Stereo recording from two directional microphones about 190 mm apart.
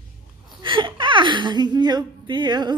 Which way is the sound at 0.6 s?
25° right (ahead or behind).